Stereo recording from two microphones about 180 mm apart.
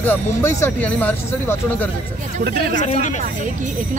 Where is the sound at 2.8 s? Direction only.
45° left (ahead or behind).